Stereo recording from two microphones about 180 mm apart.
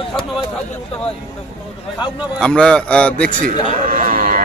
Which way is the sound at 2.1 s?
5° left (ahead or behind).